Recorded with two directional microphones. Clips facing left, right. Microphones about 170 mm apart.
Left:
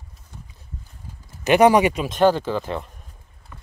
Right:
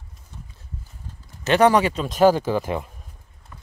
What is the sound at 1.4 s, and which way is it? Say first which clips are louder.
Speech: left 2 dB; 15° left (ahead or behind).